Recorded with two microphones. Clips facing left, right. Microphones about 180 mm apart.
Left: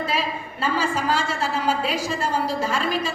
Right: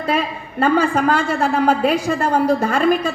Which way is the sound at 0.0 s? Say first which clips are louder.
Right 5 dB; 55° right (ahead or behind).